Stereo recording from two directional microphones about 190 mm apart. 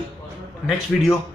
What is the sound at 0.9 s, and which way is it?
Speech, centre (ahead or behind).